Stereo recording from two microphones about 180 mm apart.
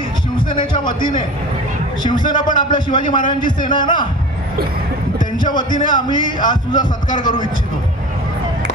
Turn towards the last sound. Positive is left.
turn(degrees=25)  # may be behind; listen again after turning